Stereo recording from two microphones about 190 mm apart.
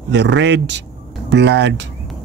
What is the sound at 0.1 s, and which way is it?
Speech, 70° right (ahead or behind).